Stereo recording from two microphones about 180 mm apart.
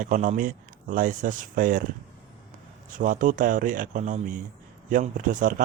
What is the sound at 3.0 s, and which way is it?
A man's voice, 45° right (ahead or behind).